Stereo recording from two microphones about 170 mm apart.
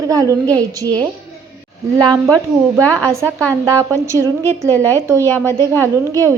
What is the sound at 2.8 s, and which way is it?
Speech, 10° left (ahead or behind).